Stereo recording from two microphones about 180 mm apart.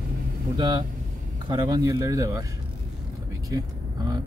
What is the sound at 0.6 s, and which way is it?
Speech, 25° right (ahead or behind).